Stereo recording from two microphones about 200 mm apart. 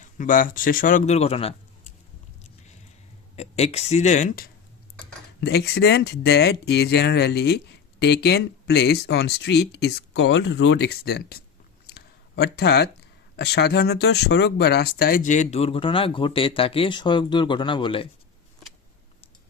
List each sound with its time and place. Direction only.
0.0 s speech: 40° left (ahead or behind)
3.3 s speech: 30° left (ahead or behind)
5.4 s speech: 55° left (ahead or behind)
11.9 s a sound: 55° left (ahead or behind)
13.3 s speech: 55° left (ahead or behind); by 18.1 s 25° left (ahead or behind)